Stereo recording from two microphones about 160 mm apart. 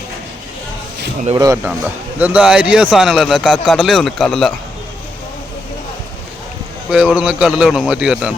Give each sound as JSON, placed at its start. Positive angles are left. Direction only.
{"t": 1.4, "sound": "speech", "side_deg": -20}
{"t": 2.1, "sound": "a man's voice", "side_deg": -10}
{"t": 6.9, "sound": "a man's voice", "side_deg": -5}